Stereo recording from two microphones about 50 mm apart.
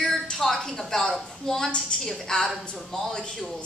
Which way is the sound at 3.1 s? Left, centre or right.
Centre.